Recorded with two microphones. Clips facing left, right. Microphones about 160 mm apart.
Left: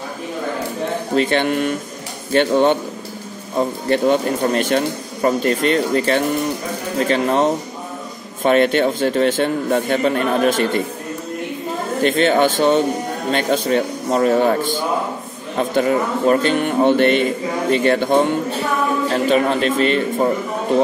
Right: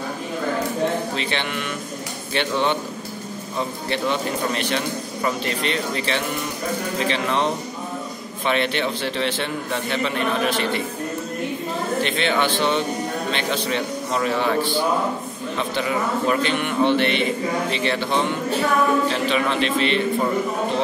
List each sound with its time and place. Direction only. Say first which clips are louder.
1.1 s a man's voice: left 9 dB; 45° left (ahead or behind)
12.0 s a man's voice: left 9 dB; 45° left (ahead or behind)